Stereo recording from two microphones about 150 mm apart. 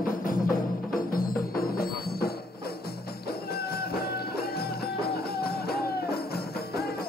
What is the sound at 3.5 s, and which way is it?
Music, 90° left.